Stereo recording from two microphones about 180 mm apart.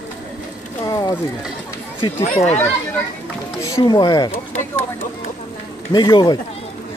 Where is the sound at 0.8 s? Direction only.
20° left (ahead or behind).